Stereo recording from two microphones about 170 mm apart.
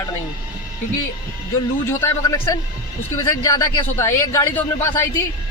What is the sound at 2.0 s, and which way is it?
Speech, 15° left (ahead or behind).